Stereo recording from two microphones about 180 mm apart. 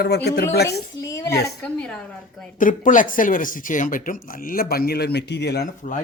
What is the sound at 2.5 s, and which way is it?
Speech, 50° left (ahead or behind).